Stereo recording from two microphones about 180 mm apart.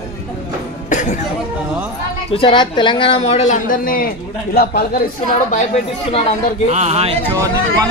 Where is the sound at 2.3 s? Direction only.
30° left (ahead or behind).